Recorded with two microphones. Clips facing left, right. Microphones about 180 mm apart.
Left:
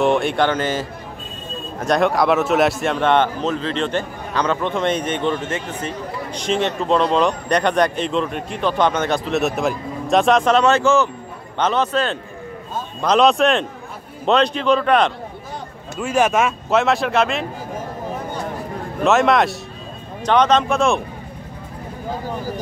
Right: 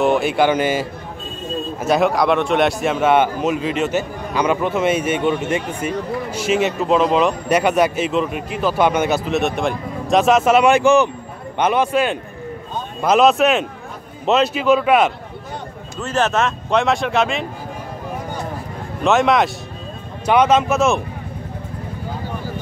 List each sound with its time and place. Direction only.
0.0 s a man's voice: centre (ahead or behind)
16.0 s speech: 10° left (ahead or behind)
19.0 s a man's voice: centre (ahead or behind)